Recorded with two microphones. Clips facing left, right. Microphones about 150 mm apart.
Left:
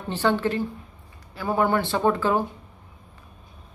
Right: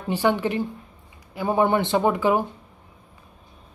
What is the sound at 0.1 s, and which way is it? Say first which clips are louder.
Speech: right 1 dB; 15° right (ahead or behind).